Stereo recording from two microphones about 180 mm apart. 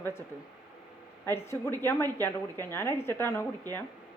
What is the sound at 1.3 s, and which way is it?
A woman's voice, 15° left (ahead or behind).